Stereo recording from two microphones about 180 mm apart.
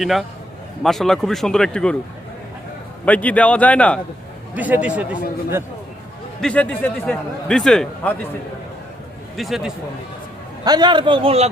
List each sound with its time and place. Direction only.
0.0 s speech: centre (ahead or behind)
3.1 s speech: 10° left (ahead or behind)
4.5 s a man's voice: 10° right (ahead or behind)
6.4 s speech: 5° left (ahead or behind)
9.3 s speech: centre (ahead or behind)
10.6 s a man's voice: 25° right (ahead or behind)